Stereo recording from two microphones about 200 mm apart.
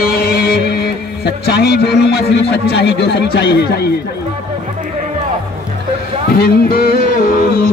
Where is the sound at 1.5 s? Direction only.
55° left (ahead or behind).